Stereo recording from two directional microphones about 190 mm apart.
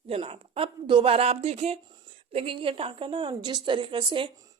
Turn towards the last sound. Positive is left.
turn(degrees=-25)  # may be behind; listen again after turning